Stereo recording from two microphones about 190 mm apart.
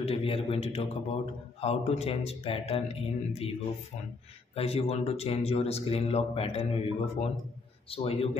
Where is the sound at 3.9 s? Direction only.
35° left (ahead or behind).